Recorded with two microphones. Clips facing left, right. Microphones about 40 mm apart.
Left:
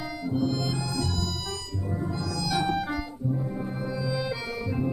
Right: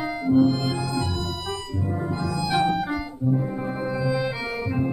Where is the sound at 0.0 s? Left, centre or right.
Right.